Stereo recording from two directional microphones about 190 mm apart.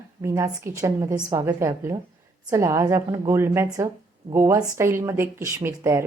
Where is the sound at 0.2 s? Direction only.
15° right (ahead or behind).